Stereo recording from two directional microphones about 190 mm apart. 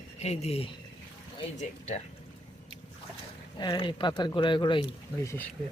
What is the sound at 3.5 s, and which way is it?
Speech, 25° left (ahead or behind).